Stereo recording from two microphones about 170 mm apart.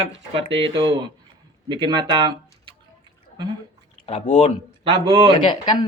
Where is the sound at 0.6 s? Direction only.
30° right (ahead or behind).